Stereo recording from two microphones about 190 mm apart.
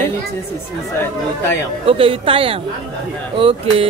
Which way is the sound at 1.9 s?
30° right (ahead or behind).